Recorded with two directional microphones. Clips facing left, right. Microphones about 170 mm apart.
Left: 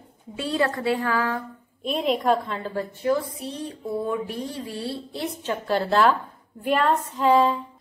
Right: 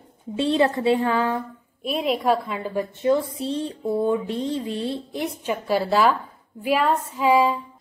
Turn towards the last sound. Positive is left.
turn(degrees=-10)  # may be behind; listen again after turning